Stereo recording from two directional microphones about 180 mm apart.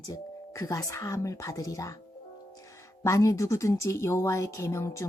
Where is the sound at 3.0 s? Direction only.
15° left (ahead or behind).